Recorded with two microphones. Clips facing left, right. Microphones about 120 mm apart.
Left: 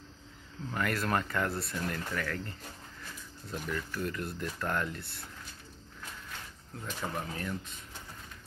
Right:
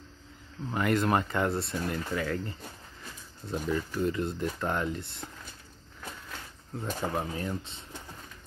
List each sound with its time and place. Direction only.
0.7 s speech: 20° right (ahead or behind)
6.8 s speech: 40° right (ahead or behind)
7.2 s speech: 30° right (ahead or behind)